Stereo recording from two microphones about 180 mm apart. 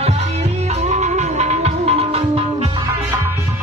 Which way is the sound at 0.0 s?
35° right (ahead or behind).